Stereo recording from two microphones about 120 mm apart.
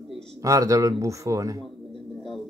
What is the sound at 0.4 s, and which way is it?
Speech, 25° right (ahead or behind).